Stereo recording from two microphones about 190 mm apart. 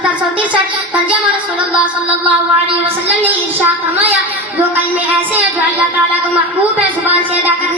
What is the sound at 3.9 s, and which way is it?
A woman's voice, 10° right (ahead or behind).